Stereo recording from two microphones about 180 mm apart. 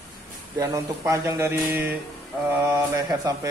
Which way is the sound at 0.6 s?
15° right (ahead or behind).